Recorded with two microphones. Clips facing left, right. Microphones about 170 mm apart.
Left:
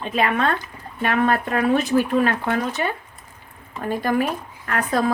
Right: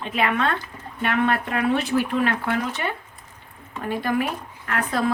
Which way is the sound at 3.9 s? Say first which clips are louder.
Left 3 dB; 40° left (ahead or behind).